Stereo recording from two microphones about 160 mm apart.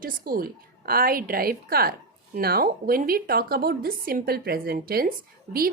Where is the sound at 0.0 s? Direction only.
65° right (ahead or behind).